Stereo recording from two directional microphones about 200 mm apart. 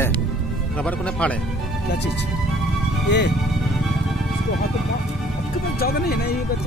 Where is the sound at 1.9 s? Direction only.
60° left (ahead or behind).